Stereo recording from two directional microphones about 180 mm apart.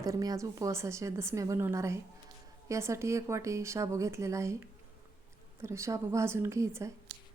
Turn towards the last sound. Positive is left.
turn(degrees=-15)  # may be behind; listen again after turning